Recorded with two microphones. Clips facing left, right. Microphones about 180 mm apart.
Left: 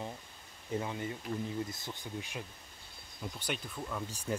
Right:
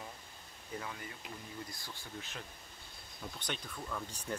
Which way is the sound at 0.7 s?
25° left (ahead or behind).